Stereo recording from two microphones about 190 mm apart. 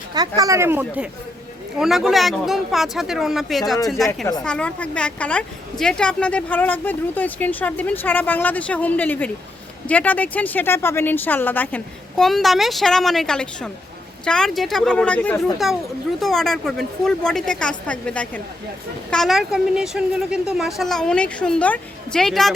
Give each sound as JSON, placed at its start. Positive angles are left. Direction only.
{"t": 0.1, "sound": "speech", "side_deg": -20}